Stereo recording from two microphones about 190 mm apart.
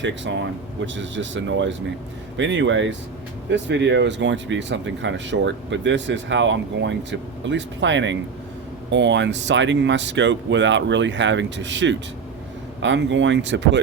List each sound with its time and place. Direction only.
0.0 s speech: 70° right (ahead or behind)